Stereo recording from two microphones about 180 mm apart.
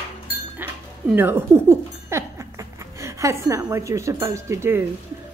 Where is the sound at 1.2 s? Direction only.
15° right (ahead or behind).